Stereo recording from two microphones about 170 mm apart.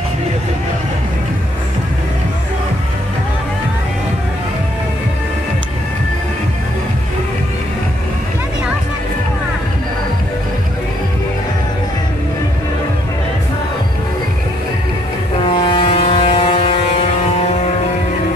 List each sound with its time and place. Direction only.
15.6 s vehicle: 30° left (ahead or behind)